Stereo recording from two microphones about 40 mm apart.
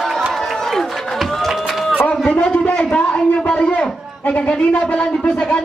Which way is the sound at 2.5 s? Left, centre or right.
Left.